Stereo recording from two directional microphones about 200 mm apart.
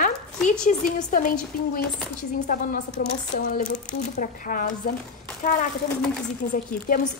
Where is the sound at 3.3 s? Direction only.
40° left (ahead or behind).